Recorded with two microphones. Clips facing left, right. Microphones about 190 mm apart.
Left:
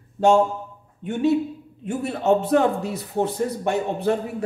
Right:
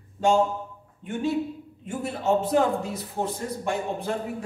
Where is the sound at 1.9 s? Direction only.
70° left (ahead or behind).